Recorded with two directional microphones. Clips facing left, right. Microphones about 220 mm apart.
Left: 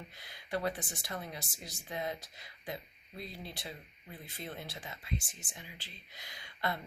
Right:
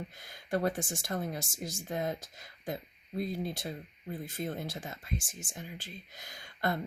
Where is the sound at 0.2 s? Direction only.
45° right (ahead or behind).